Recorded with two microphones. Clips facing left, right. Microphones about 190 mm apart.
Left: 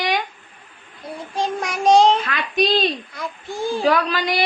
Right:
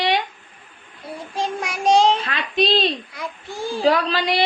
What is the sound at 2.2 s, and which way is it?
Speech, 30° right (ahead or behind).